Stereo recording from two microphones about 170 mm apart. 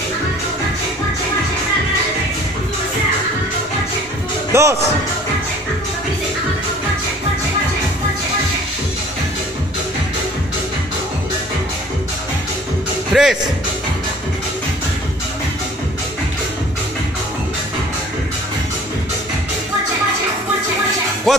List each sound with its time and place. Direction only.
4.5 s speech: 15° right (ahead or behind)
13.1 s speech: centre (ahead or behind)
21.3 s speech: centre (ahead or behind)